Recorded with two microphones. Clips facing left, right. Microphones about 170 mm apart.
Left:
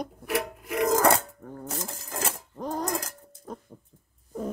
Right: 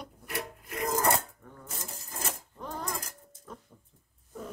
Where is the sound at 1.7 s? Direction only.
85° left.